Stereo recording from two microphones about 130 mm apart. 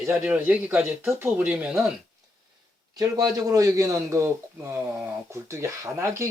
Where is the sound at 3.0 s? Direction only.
30° right (ahead or behind).